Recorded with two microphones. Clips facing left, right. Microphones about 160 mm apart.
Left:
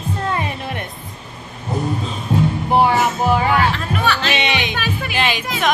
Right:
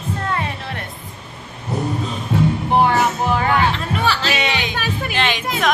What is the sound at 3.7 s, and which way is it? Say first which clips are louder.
Music: even; 30° right (ahead or behind).